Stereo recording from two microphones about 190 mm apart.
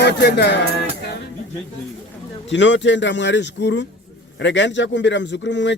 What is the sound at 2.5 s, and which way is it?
Speech, 70° left (ahead or behind).